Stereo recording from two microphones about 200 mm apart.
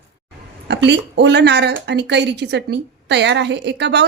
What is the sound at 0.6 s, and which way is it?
A woman's voice, 60° right (ahead or behind).